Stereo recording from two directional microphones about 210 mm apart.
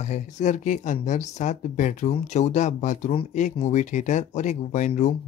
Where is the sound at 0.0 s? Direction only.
35° left (ahead or behind).